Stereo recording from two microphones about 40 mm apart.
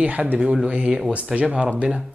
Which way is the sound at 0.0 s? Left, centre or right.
Right.